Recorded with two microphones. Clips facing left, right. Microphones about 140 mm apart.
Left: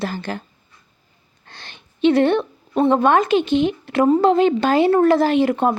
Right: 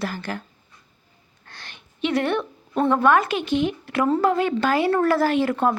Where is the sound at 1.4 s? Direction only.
25° left (ahead or behind).